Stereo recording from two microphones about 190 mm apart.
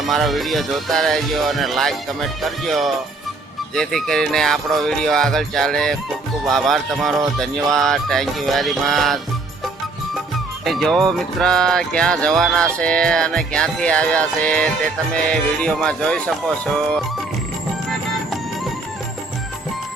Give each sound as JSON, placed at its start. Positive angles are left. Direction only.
{"t": 0.0, "sound": "speech", "side_deg": 0}
{"t": 10.7, "sound": "speech", "side_deg": 0}